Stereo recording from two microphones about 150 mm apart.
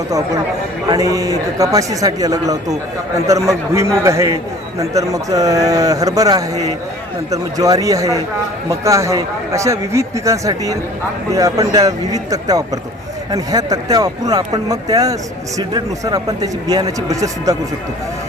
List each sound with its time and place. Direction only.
0.9 s speech: 25° right (ahead or behind)